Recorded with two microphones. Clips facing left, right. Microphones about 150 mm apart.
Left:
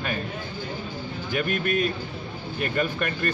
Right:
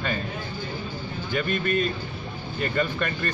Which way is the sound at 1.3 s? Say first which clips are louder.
Even; 10° left (ahead or behind).